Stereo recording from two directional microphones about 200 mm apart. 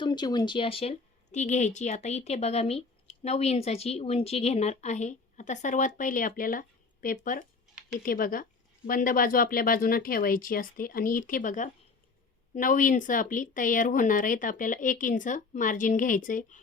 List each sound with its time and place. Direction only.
0.0 s a woman's voice: 20° left (ahead or behind); by 16.6 s 40° left (ahead or behind)